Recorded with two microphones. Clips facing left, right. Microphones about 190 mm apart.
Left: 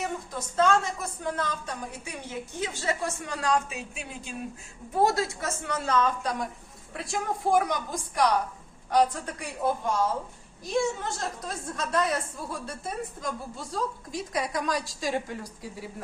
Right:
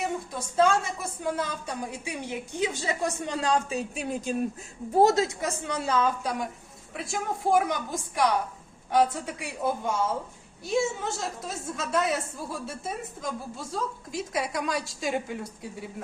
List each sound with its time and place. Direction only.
0.0 s a woman's voice: 10° right (ahead or behind); by 4.4 s 40° right (ahead or behind)
4.9 s a woman's voice: 20° right (ahead or behind); by 15.9 s centre (ahead or behind)